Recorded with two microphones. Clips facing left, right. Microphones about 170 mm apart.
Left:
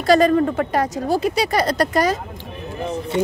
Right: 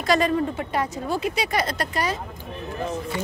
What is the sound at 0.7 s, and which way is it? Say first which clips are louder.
Speech: left 6 dB; 45° left (ahead or behind).